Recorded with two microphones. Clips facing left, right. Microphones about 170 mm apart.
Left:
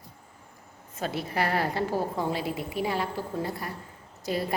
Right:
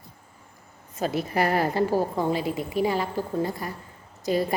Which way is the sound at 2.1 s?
Centre (ahead or behind).